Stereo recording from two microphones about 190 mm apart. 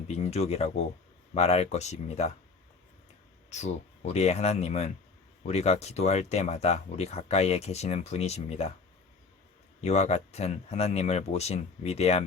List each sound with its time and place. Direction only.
0.1 s speech: 35° left (ahead or behind)
3.5 s speech: 35° left (ahead or behind)
9.8 s speech: 35° left (ahead or behind)